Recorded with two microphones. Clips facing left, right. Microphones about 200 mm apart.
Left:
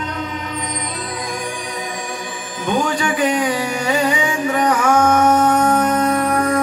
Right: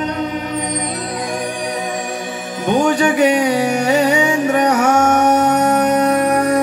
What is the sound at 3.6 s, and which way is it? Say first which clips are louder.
Carnatic music: right 5 dB; 70° right (ahead or behind).